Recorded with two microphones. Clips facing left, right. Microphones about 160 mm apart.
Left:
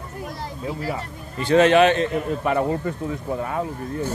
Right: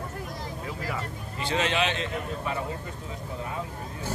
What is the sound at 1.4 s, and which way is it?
A man's voice, 55° left (ahead or behind).